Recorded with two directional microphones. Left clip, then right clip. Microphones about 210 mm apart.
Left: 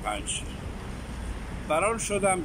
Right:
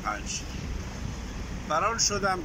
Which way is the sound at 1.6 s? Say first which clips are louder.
Even; 15° left (ahead or behind).